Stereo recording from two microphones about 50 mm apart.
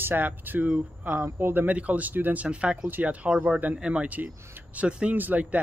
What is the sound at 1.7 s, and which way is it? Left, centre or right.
Speech, right.